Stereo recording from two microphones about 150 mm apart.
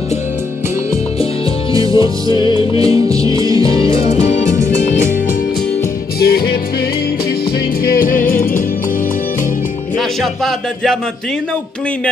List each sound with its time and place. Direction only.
1.7 s music: 25° right (ahead or behind)
2.3 s music: 35° left (ahead or behind)
2.8 s music: 25° right (ahead or behind)
3.6 s music: 35° left (ahead or behind)
6.1 s music: 90° left
7.8 s music: 75° left (ahead or behind)
9.9 s music: centre (ahead or behind)